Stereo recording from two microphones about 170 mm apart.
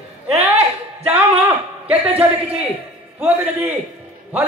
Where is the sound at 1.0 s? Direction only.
10° right (ahead or behind).